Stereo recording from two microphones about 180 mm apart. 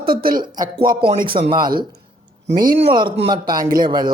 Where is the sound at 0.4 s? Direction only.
25° right (ahead or behind).